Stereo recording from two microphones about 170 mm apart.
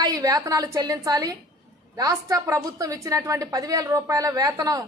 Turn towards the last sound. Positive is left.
turn(degrees=-20)  # may be behind; listen again after turning